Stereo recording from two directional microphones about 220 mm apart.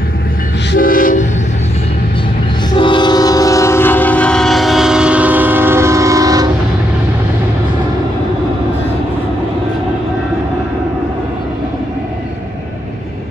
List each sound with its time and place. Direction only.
0.7 s train: 40° left (ahead or behind)
2.7 s train: 20° left (ahead or behind); by 6.5 s 15° right (ahead or behind)